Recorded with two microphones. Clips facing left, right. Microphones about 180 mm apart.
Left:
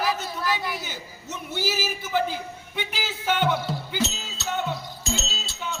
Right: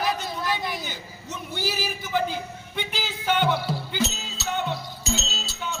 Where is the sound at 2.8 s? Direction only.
5° left (ahead or behind).